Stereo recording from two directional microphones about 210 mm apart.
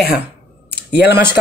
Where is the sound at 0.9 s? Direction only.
50° left (ahead or behind).